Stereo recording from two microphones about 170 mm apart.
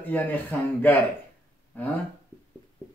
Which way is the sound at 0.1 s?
10° left (ahead or behind).